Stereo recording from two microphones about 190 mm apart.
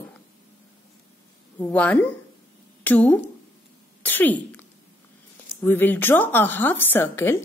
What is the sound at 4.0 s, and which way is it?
Cough, 10° left (ahead or behind).